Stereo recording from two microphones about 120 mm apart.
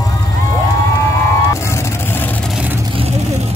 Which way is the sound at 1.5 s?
20° left (ahead or behind).